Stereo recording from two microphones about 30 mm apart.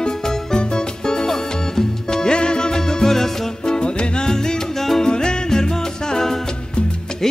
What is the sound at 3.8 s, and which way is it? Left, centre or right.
Music, left.